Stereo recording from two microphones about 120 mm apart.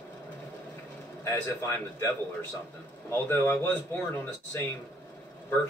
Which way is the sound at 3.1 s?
15° left (ahead or behind).